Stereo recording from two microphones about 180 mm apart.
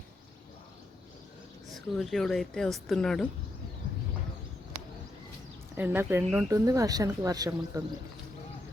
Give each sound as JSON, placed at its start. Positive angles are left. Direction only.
{"t": 1.7, "sound": "a woman's voice", "side_deg": 0}
{"t": 5.7, "sound": "speech", "side_deg": -10}